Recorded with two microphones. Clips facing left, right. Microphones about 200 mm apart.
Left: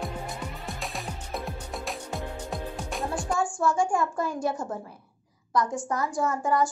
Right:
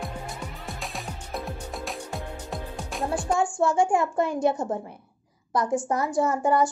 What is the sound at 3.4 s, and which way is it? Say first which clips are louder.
A child's voice: right 2 dB; 25° right (ahead or behind).